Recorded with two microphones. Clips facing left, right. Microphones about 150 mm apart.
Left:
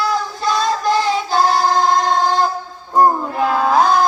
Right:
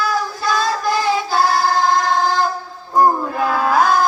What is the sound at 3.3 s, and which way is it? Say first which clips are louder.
Child singing: left 1 dB; 25° left (ahead or behind).